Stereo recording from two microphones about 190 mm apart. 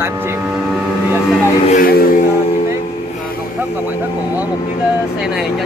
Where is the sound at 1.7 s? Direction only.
50° left (ahead or behind).